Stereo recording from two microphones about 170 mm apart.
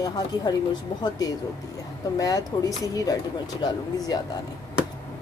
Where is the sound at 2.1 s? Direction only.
20° left (ahead or behind).